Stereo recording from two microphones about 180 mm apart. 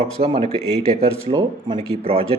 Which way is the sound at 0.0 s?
35° right (ahead or behind).